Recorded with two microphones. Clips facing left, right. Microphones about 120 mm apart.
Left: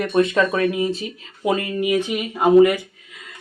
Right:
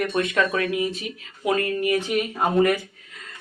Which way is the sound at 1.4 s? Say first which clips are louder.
Left 2 dB; 20° left (ahead or behind).